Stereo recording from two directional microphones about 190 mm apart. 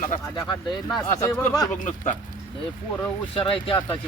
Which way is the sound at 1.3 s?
15° left (ahead or behind).